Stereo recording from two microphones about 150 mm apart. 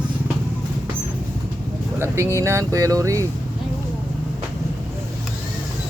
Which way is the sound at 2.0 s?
15° right (ahead or behind).